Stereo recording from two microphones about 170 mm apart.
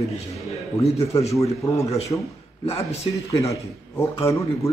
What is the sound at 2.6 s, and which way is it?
Speech, 35° left (ahead or behind).